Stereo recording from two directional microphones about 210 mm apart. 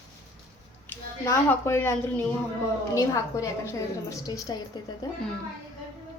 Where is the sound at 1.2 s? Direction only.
15° left (ahead or behind).